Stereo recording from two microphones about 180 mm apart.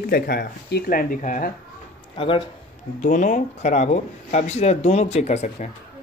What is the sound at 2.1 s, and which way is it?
Speech, 30° left (ahead or behind).